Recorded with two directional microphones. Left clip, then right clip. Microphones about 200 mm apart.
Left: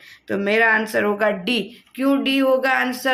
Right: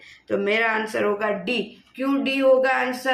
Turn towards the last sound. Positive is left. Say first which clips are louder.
# left 2 dB
turn(degrees=55)  # may be behind; listen again after turning